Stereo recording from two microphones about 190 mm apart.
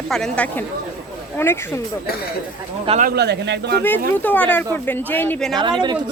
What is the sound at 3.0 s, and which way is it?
Speech, 55° right (ahead or behind).